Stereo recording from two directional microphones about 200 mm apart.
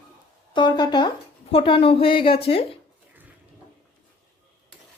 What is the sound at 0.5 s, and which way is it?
Speech, 20° left (ahead or behind).